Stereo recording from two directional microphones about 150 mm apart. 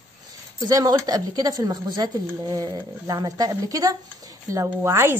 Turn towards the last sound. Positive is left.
turn(degrees=-15)  # may be behind; listen again after turning